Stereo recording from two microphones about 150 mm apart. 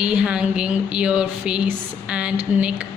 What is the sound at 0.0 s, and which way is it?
A woman's voice, 5° right (ahead or behind).